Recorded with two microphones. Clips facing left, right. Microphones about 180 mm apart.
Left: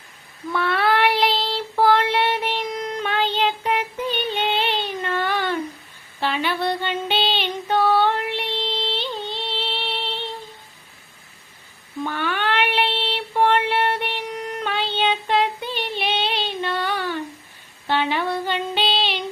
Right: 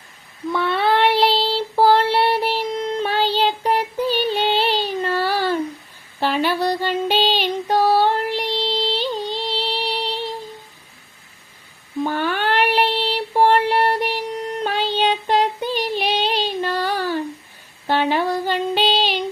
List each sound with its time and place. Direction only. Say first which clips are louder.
0.5 s child singing: right 2 dB; 25° right (ahead or behind)
6.1 s female singing: right 4 dB; 40° right (ahead or behind)
12.0 s child singing: right 3 dB; 40° right (ahead or behind)
17.8 s female singing: right 3 dB; 40° right (ahead or behind)